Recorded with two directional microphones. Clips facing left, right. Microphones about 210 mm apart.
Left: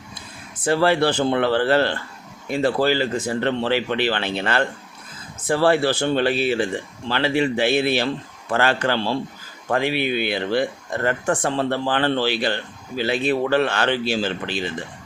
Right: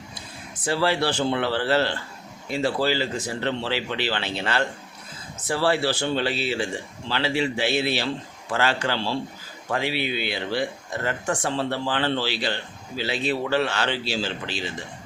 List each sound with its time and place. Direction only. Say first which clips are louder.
0.6 s speech: left 5 dB; 55° left (ahead or behind)